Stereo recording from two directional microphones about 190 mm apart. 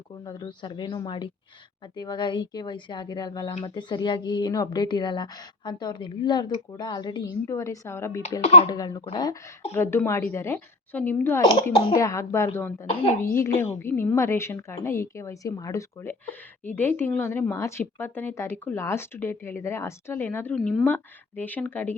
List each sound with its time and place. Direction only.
0.3 s speech: 20° left (ahead or behind)
8.4 s speech: 30° left (ahead or behind)
8.6 s speech: 20° left (ahead or behind)